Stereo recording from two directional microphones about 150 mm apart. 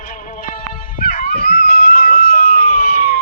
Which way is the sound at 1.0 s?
75° left (ahead or behind).